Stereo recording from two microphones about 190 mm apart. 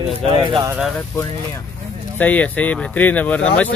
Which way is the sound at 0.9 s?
10° left (ahead or behind).